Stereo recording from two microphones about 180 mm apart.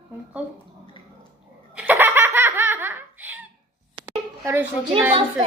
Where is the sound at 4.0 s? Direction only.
30° right (ahead or behind).